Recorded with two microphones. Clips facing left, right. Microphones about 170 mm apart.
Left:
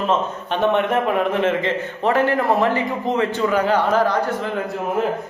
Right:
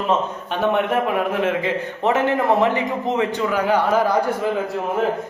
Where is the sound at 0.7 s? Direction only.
5° right (ahead or behind).